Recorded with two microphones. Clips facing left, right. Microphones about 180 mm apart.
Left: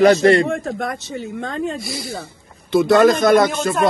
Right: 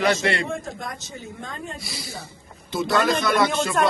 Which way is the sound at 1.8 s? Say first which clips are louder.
Left 8 dB; 55° left (ahead or behind).